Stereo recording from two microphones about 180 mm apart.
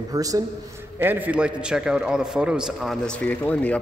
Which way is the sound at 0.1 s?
20° right (ahead or behind).